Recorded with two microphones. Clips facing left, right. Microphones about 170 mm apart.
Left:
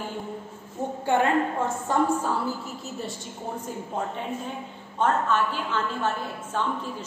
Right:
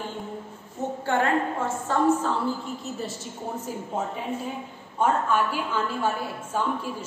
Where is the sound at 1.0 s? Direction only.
15° left (ahead or behind).